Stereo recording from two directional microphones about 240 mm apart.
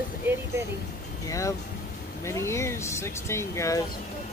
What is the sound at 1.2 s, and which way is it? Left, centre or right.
Speech, centre.